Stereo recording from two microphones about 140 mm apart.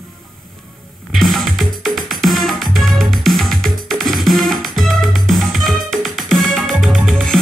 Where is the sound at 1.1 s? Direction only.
Centre (ahead or behind).